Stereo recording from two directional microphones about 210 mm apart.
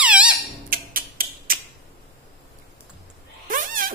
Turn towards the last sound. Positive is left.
turn(degrees=-40)  # may be behind; listen again after turning